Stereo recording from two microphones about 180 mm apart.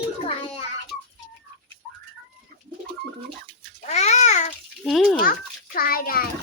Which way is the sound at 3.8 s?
40° left (ahead or behind).